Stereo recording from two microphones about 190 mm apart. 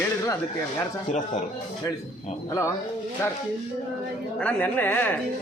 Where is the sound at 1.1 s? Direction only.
40° left (ahead or behind).